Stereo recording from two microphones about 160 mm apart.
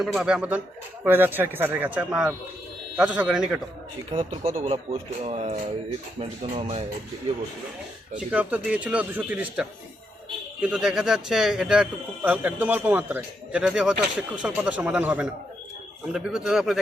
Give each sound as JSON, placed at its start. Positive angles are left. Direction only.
{"t": 0.0, "sound": "speech", "side_deg": 0}
{"t": 4.1, "sound": "speech", "side_deg": -35}
{"t": 8.1, "sound": "speech", "side_deg": -10}